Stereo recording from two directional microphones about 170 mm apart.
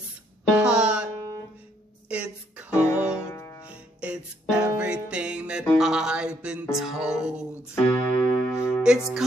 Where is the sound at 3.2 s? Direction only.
15° left (ahead or behind).